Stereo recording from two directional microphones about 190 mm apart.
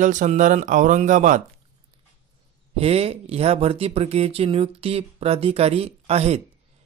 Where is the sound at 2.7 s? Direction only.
30° right (ahead or behind).